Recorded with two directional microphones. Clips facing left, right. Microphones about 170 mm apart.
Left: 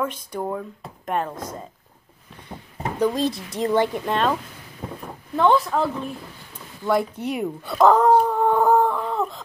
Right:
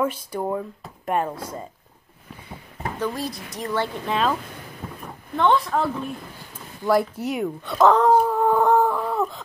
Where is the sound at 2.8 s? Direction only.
20° left (ahead or behind).